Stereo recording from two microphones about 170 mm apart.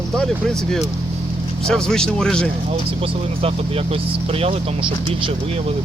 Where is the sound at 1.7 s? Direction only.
5° left (ahead or behind).